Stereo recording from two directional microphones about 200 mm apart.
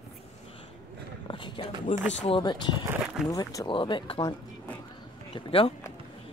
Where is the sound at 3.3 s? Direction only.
15° left (ahead or behind).